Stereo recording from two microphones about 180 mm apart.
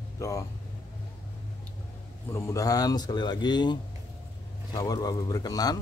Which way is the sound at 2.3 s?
20° left (ahead or behind).